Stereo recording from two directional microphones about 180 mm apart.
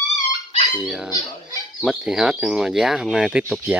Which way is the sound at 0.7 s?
Centre (ahead or behind).